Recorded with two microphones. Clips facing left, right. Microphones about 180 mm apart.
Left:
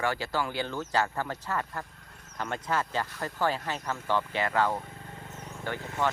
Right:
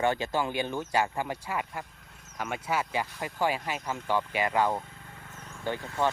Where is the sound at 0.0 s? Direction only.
20° right (ahead or behind).